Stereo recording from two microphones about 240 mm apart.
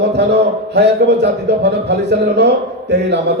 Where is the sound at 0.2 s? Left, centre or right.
Right.